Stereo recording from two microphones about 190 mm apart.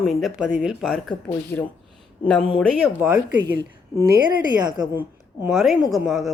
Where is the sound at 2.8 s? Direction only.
5° right (ahead or behind).